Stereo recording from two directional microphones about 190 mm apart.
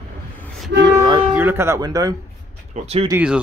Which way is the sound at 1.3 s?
10° right (ahead or behind).